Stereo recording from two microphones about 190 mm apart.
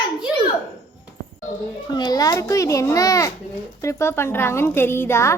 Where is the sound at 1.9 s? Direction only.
20° left (ahead or behind).